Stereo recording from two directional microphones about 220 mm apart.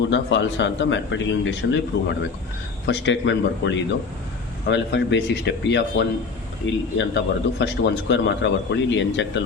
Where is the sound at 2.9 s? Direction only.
55° left (ahead or behind).